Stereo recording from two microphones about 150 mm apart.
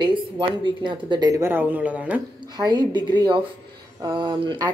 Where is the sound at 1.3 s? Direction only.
15° right (ahead or behind).